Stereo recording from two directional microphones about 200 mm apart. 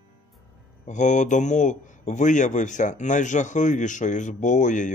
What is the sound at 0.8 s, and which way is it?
Speech, 40° left (ahead or behind).